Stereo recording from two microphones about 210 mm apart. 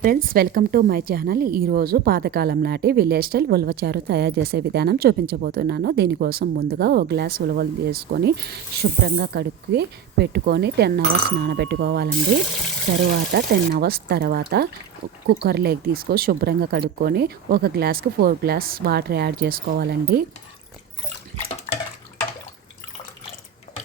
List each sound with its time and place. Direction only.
0.0 s speech: 45° right (ahead or behind)
13.3 s speech: 50° right (ahead or behind)
21.3 s bathtub: 30° left (ahead or behind)